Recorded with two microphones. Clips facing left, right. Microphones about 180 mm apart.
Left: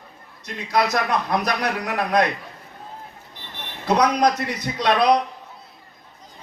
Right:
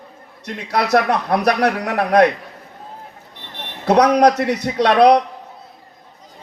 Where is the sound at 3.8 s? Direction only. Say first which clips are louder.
Right 6 dB; 65° right (ahead or behind).